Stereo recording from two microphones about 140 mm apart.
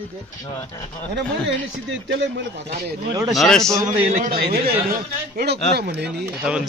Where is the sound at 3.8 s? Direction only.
65° right (ahead or behind); by 4.7 s 90° right.